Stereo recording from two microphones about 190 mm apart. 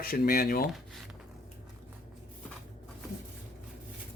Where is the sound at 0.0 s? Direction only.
50° left (ahead or behind).